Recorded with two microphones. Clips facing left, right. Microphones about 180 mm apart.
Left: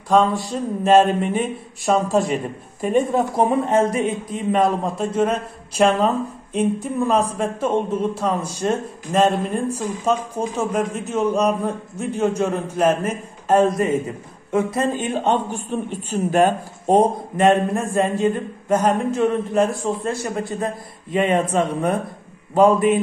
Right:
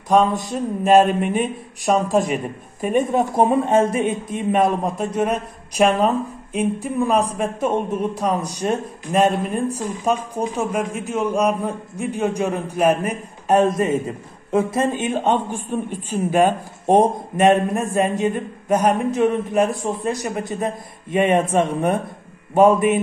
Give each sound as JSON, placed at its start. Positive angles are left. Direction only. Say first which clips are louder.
{"t": 0.1, "sound": "a man's voice", "louder": "even", "side_deg": -20}
{"t": 9.8, "sound": "a man's voice", "louder": "even", "side_deg": -15}
{"t": 15.0, "sound": "a man's voice", "louder": "right 1 dB", "side_deg": -15}